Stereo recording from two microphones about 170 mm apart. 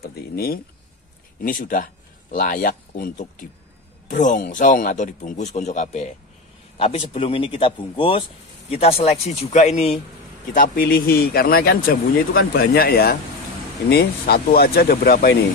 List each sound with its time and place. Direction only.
0.0 s a man's voice: 65° left (ahead or behind); by 9.9 s 40° left (ahead or behind)
10.5 s a man's voice: 55° left (ahead or behind)